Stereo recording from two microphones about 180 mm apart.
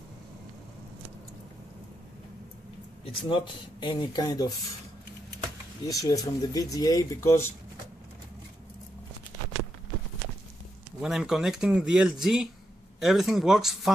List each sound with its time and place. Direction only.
3.1 s speech: 30° left (ahead or behind)
5.9 s speech: 20° left (ahead or behind)
11.0 s speech: 5° right (ahead or behind)